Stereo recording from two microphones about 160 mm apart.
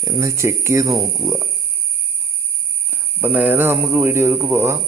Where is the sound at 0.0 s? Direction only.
20° right (ahead or behind).